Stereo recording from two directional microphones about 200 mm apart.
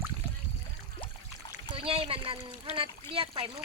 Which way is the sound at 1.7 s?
25° right (ahead or behind).